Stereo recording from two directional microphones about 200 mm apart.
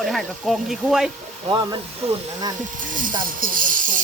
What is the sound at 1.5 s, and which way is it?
Speech, 20° right (ahead or behind).